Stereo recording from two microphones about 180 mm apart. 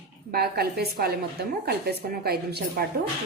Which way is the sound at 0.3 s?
60° right (ahead or behind).